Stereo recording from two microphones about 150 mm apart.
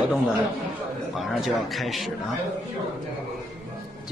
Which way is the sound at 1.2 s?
Centre (ahead or behind).